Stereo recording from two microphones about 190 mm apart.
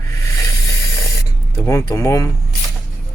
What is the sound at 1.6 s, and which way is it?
Speech, 15° left (ahead or behind).